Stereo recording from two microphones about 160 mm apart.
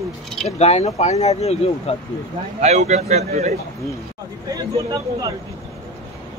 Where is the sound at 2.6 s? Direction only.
45° right (ahead or behind).